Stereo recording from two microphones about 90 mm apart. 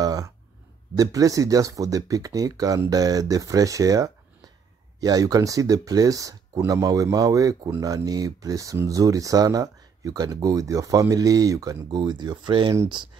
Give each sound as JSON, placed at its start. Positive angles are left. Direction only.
{"t": 0.0, "sound": "a sound", "side_deg": -45}
{"t": 0.9, "sound": "speech", "side_deg": -45}
{"t": 12.0, "sound": "speech", "side_deg": -55}